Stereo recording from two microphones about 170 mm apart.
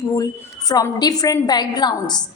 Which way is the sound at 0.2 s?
20° left (ahead or behind).